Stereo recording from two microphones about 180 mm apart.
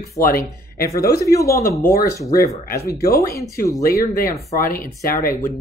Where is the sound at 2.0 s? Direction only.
20° left (ahead or behind).